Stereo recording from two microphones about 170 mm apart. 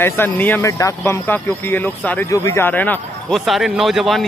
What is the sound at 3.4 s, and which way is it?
Speech, centre (ahead or behind).